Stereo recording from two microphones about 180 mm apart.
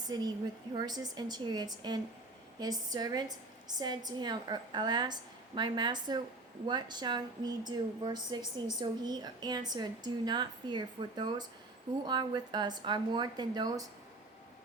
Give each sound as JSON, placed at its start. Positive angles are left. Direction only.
{"t": 0.1, "sound": "a woman's voice", "side_deg": -25}